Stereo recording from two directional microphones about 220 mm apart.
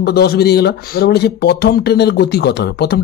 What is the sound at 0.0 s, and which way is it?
Speech, 45° left (ahead or behind).